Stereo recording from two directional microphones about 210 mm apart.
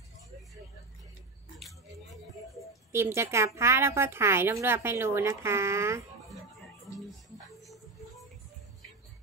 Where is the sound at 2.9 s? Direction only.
10° right (ahead or behind).